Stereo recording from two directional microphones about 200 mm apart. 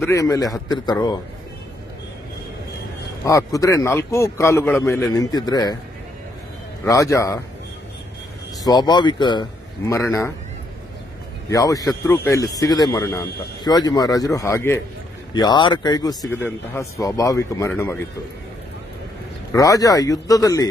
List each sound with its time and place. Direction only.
0.1 s a man's voice: 15° left (ahead or behind)
3.3 s a man's voice: 15° left (ahead or behind)
6.8 s a man's voice: 15° left (ahead or behind)
8.6 s speech: 20° left (ahead or behind)
11.4 s a man's voice: 15° left (ahead or behind)
19.5 s a man's voice: 15° left (ahead or behind)